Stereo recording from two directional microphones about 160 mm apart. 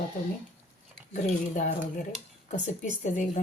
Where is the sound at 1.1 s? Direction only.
55° left (ahead or behind).